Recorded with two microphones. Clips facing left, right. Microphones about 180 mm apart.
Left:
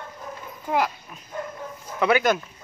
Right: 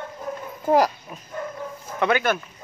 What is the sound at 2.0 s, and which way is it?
Speech, 15° left (ahead or behind).